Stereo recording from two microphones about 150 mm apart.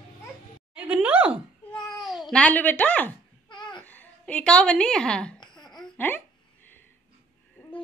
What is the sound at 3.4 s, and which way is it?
Babbling, 30° left (ahead or behind).